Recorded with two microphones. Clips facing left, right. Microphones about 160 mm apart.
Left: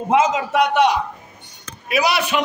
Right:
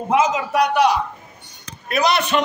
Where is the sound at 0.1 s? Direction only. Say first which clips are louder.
Left 1 dB; 25° left (ahead or behind).